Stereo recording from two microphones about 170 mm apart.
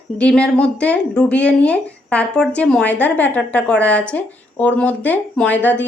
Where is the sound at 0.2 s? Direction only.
5° left (ahead or behind).